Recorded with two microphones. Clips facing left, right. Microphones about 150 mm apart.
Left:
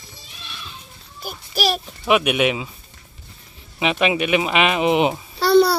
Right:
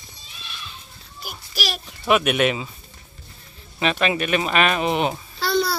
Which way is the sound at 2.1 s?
5° left (ahead or behind).